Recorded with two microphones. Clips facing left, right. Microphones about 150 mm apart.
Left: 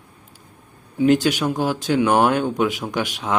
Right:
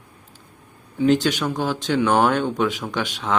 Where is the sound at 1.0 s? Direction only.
10° left (ahead or behind).